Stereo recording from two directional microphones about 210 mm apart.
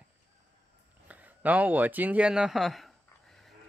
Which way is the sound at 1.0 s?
5° right (ahead or behind).